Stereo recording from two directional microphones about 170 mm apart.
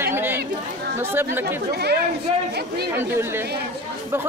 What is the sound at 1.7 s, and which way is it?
Speech, 70° right (ahead or behind).